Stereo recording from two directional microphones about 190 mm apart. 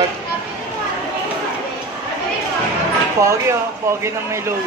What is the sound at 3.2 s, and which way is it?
Speech, 15° right (ahead or behind).